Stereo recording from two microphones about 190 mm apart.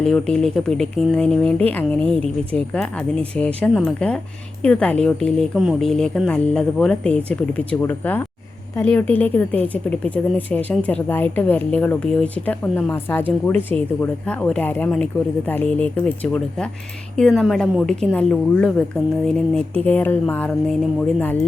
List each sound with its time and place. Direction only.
0.0 s speech: 5° left (ahead or behind)